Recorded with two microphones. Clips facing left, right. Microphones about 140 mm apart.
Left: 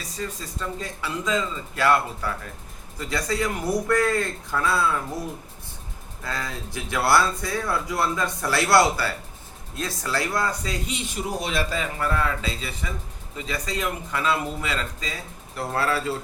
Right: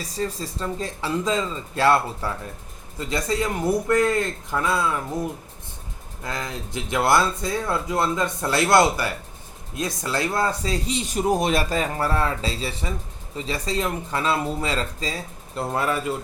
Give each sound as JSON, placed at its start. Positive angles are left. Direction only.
{"t": 0.2, "sound": "speech", "side_deg": -30}
{"t": 6.2, "sound": "speech", "side_deg": -20}
{"t": 15.5, "sound": "speech", "side_deg": -20}